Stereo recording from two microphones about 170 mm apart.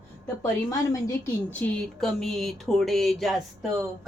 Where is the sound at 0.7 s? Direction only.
20° left (ahead or behind).